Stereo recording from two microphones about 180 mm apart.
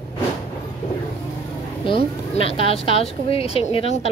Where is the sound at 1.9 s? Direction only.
30° left (ahead or behind).